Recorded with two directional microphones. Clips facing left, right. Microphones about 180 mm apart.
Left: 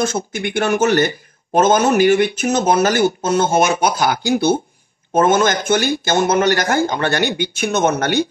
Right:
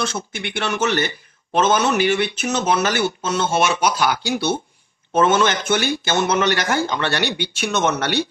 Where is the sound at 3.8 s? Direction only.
30° left (ahead or behind).